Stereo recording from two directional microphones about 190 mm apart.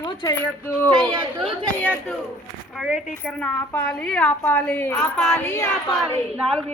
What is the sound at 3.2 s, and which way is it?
A woman's voice, 5° left (ahead or behind).